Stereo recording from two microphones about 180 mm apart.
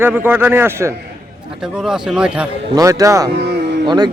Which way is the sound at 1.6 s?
5° right (ahead or behind).